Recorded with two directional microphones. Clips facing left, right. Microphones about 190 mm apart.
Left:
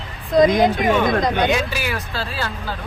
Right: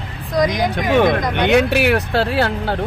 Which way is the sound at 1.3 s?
65° right (ahead or behind).